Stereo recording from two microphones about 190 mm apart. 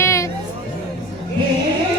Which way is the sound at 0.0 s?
15° left (ahead or behind).